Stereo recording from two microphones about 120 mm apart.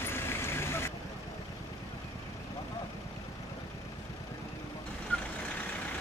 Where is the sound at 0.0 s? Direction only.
20° left (ahead or behind).